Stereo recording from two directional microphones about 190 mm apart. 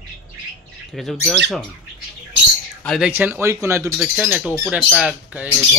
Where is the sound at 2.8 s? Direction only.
5° left (ahead or behind).